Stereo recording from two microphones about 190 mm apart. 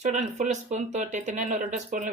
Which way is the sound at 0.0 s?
40° right (ahead or behind).